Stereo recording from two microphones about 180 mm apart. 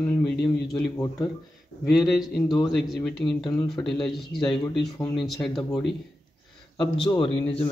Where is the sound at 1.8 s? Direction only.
Centre (ahead or behind).